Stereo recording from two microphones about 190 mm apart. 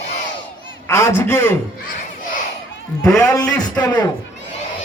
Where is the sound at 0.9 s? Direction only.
15° left (ahead or behind).